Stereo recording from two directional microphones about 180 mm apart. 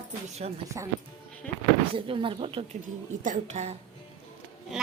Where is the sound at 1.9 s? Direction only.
30° right (ahead or behind).